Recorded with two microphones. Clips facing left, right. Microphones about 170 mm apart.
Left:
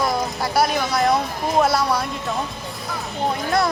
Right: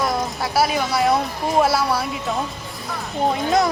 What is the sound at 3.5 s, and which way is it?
Speech, 20° right (ahead or behind).